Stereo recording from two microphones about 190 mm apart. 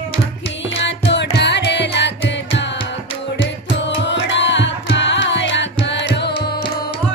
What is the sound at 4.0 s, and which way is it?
Music, 70° left (ahead or behind).